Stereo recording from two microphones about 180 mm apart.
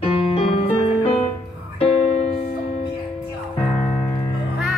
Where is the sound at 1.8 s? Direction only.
35° left (ahead or behind).